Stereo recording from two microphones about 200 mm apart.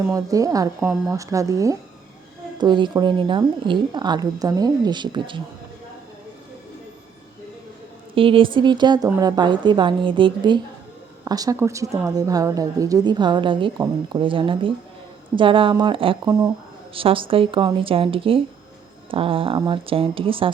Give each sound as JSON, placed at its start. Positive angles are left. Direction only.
{"t": 0.1, "sound": "a woman's voice", "side_deg": -15}
{"t": 8.1, "sound": "a woman's voice", "side_deg": -25}